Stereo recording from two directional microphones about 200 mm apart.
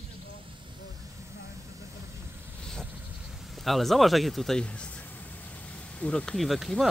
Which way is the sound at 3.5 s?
Centre (ahead or behind).